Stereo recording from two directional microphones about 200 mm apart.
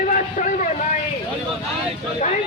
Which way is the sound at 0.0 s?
40° left (ahead or behind).